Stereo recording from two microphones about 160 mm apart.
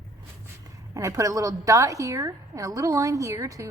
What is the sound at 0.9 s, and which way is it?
A woman's voice, 20° right (ahead or behind).